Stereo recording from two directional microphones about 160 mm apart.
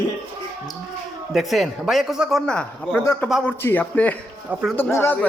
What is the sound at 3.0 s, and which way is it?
Speech, 15° left (ahead or behind).